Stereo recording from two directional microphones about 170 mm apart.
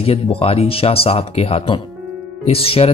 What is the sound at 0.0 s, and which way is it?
A man's voice, 35° left (ahead or behind).